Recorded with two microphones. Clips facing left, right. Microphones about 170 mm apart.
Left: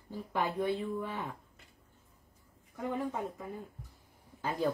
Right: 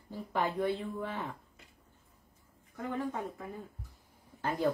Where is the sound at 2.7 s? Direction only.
15° left (ahead or behind).